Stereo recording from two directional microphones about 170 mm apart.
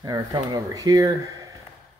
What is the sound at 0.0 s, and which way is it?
Speech, 20° right (ahead or behind).